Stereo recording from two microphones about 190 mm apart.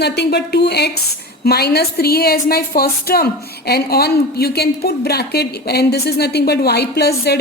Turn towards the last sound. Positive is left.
turn(degrees=55)  # may be behind; listen again after turning